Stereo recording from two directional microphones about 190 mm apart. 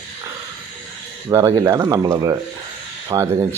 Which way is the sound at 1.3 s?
15° right (ahead or behind).